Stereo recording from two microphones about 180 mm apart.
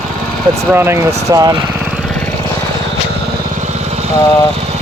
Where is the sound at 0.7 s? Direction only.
15° right (ahead or behind).